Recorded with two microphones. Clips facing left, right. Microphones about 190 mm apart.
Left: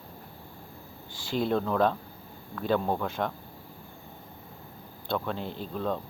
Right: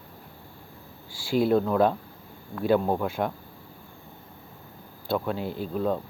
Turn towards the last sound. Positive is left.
turn(degrees=-5)  # may be behind; listen again after turning